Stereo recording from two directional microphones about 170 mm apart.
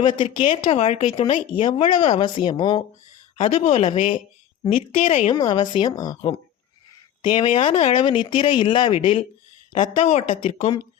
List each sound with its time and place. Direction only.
0.0 s speech: 30° left (ahead or behind)
5.3 s speech: 25° left (ahead or behind)
7.2 s speech: 25° left (ahead or behind)